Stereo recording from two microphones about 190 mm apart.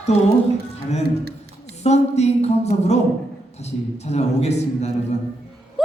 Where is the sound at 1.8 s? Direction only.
35° left (ahead or behind).